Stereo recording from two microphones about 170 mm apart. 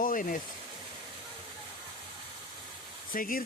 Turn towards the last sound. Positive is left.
turn(degrees=55)  # may be behind; listen again after turning